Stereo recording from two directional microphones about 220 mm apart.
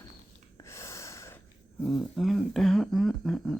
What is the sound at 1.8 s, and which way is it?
Speech, centre (ahead or behind).